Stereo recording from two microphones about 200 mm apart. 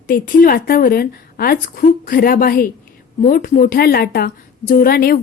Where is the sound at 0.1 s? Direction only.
45° left (ahead or behind).